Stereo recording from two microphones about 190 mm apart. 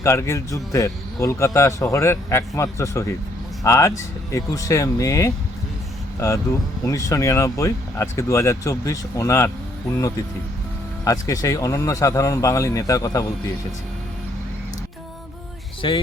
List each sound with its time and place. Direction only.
0.0 s a man's voice: 15° left (ahead or behind)
11.0 s a man's voice: 20° left (ahead or behind)
15.8 s speech: 25° left (ahead or behind)